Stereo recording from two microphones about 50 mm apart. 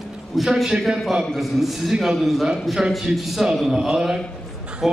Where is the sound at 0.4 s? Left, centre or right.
Centre.